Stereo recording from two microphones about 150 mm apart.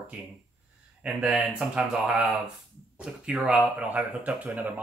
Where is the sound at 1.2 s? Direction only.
5° right (ahead or behind).